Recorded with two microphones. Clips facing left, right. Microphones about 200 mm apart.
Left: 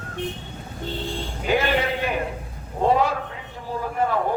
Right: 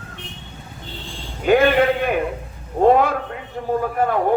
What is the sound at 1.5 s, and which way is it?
Speech, 55° right (ahead or behind).